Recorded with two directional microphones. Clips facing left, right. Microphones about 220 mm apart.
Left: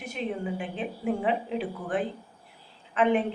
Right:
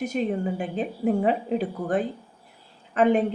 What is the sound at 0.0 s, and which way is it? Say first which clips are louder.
Speech: right 6 dB; 40° right (ahead or behind).